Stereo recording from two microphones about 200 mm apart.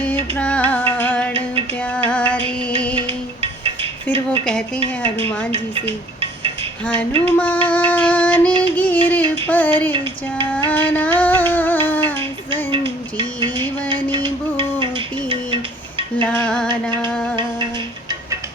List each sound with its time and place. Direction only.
0.0 s music: 5° left (ahead or behind)
2.9 s music: 30° right (ahead or behind)
4.0 s speech: 5° left (ahead or behind)
6.1 s music: 30° right (ahead or behind)
7.3 s music: 5° left (ahead or behind)
10.7 s a sound: 10° left (ahead or behind)
13.4 s music: 20° right (ahead or behind)
14.5 s a sound: 25° right (ahead or behind)
16.2 s music: 5° left (ahead or behind)